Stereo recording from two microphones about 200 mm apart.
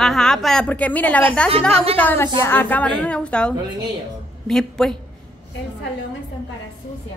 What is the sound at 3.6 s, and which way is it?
Speech, 20° right (ahead or behind).